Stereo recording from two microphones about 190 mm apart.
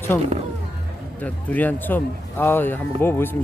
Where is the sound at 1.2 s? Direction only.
10° left (ahead or behind).